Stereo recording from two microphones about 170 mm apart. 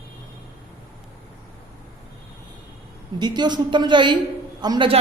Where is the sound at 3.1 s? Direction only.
25° right (ahead or behind).